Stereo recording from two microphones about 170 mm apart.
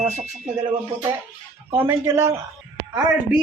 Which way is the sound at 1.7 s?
15° right (ahead or behind).